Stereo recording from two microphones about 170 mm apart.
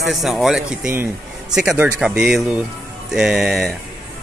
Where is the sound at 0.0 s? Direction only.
Centre (ahead or behind).